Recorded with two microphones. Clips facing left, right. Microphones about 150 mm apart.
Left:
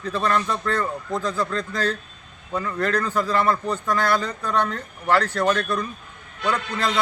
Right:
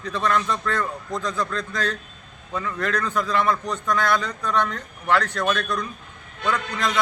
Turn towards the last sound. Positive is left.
turn(degrees=5)  # may be behind; listen again after turning